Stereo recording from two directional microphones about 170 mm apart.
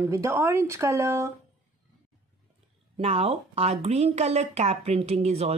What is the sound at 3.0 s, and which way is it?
A woman's voice, 35° right (ahead or behind).